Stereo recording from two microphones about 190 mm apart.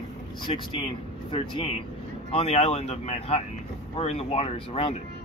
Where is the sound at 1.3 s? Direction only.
25° left (ahead or behind).